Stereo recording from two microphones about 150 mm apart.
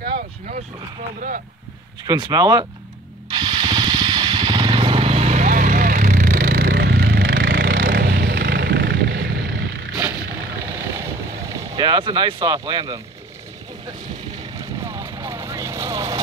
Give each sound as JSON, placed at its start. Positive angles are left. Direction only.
{"t": 0.0, "sound": "vehicle", "side_deg": -80}
{"t": 2.0, "sound": "speech", "side_deg": -30}
{"t": 3.3, "sound": "a sound", "side_deg": -30}
{"t": 9.9, "sound": "vehicle", "side_deg": -10}
{"t": 14.8, "sound": "vehicle", "side_deg": -20}